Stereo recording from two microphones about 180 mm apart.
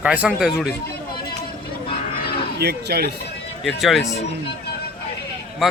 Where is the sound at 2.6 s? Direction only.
60° right (ahead or behind).